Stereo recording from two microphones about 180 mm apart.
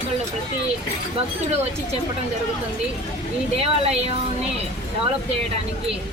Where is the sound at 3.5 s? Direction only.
30° right (ahead or behind).